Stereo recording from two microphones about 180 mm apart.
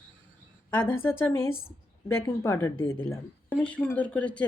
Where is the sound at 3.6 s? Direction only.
10° left (ahead or behind).